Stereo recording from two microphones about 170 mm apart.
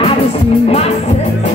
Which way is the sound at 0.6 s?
35° left (ahead or behind).